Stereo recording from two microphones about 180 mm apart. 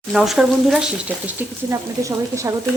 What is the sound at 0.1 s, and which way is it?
A woman's voice, 5° right (ahead or behind).